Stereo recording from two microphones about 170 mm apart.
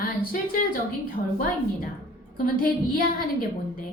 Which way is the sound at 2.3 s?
55° left (ahead or behind).